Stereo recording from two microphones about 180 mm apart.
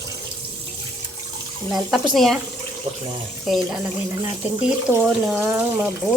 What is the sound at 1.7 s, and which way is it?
Speech, centre (ahead or behind).